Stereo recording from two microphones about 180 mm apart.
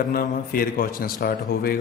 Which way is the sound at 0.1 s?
55° left (ahead or behind).